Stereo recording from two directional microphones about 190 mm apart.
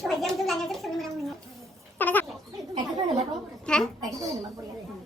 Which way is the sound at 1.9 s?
10° left (ahead or behind).